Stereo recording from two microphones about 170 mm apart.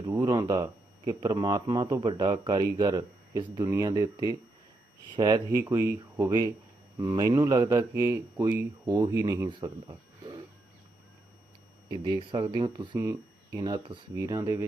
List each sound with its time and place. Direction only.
0.0 s speech: 20° right (ahead or behind)
11.9 s speech: 25° right (ahead or behind)